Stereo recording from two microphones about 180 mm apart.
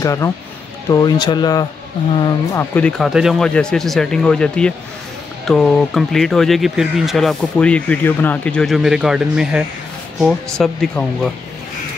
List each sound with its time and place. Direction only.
0.0 s speech: 20° left (ahead or behind)
2.7 s speech: 5° left (ahead or behind)